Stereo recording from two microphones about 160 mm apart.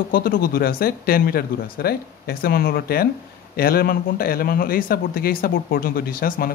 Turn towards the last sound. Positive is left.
turn(degrees=65)  # may be behind; listen again after turning